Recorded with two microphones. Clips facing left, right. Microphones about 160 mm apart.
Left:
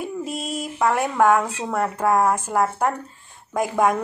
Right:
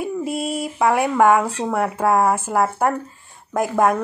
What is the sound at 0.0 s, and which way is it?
A woman's voice, 5° right (ahead or behind).